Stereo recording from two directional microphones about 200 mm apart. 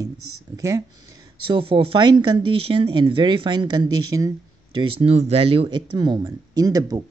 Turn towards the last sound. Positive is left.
turn(degrees=-20)  # may be behind; listen again after turning